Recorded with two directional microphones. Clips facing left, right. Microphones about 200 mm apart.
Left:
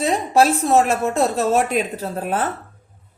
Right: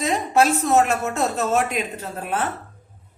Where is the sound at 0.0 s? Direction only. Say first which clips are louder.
Left 3 dB; 30° left (ahead or behind).